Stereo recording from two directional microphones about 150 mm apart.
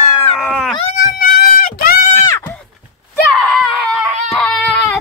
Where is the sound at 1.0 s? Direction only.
75° left (ahead or behind).